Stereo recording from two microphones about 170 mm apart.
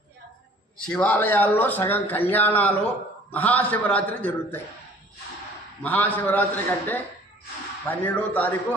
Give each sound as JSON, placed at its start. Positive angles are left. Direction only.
{"t": 0.9, "sound": "speech", "side_deg": 10}
{"t": 5.8, "sound": "speech", "side_deg": 10}